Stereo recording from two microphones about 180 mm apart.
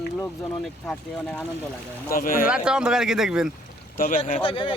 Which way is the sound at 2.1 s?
50° left (ahead or behind).